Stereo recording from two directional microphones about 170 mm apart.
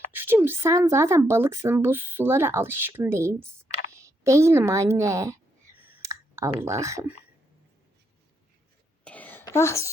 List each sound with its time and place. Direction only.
0.1 s a woman's voice: 10° right (ahead or behind)
5.8 s clicking: 15° right (ahead or behind)
6.6 s speech: 15° right (ahead or behind)
9.0 s a sound: 10° left (ahead or behind)